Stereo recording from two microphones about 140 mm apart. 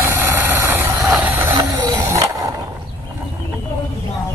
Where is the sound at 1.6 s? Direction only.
30° right (ahead or behind).